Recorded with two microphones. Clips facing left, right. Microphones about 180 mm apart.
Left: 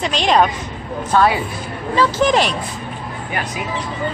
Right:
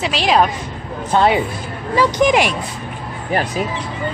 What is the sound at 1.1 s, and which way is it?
Speech, 20° right (ahead or behind).